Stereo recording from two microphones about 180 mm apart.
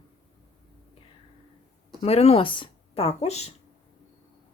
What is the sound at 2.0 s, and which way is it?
Speech, 35° left (ahead or behind).